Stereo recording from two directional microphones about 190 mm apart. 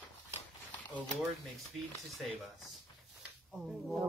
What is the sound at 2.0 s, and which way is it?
Speech, centre (ahead or behind).